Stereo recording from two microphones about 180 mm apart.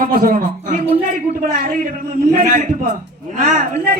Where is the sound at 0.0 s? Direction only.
55° right (ahead or behind).